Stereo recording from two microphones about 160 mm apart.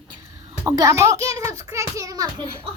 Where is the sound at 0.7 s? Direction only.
20° right (ahead or behind).